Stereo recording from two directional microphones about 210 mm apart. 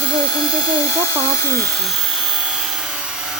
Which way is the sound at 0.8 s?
15° left (ahead or behind).